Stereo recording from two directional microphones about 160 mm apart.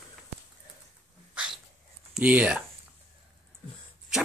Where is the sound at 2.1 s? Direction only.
5° right (ahead or behind).